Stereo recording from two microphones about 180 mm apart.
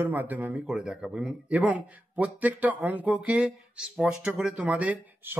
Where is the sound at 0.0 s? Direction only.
10° right (ahead or behind).